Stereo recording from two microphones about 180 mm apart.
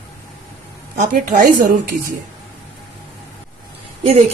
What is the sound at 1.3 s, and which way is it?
Speech, 60° right (ahead or behind).